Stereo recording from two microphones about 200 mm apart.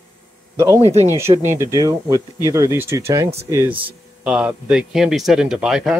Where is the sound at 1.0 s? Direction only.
15° right (ahead or behind).